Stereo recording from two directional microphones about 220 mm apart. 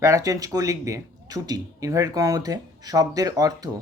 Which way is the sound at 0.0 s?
15° right (ahead or behind).